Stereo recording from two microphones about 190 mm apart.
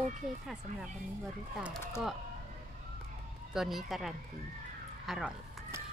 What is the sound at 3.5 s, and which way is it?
Speech, centre (ahead or behind).